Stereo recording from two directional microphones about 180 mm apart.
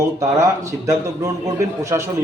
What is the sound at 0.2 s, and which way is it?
A man's voice, 15° right (ahead or behind).